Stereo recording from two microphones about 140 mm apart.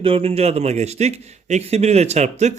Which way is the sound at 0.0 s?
45° right (ahead or behind).